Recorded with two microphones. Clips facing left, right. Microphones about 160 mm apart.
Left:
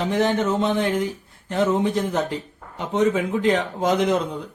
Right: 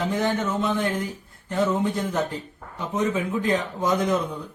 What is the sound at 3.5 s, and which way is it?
Speech, 85° left.